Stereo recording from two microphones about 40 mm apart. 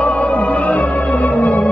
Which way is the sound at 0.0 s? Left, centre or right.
Left.